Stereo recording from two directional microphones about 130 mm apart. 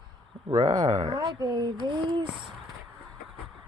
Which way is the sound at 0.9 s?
55° right (ahead or behind).